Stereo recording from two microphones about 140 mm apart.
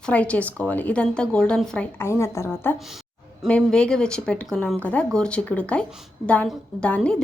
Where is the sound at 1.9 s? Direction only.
20° left (ahead or behind).